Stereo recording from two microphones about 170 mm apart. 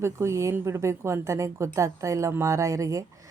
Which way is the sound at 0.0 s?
15° right (ahead or behind).